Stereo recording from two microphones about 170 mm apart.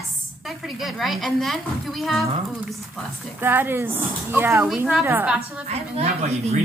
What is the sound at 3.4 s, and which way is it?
Speech, 10° right (ahead or behind).